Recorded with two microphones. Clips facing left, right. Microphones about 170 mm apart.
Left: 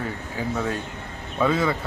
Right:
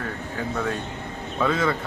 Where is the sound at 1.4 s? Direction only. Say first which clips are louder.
Left 1 dB; centre (ahead or behind).